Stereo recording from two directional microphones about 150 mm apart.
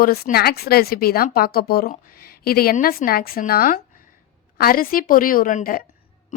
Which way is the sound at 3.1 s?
80° left.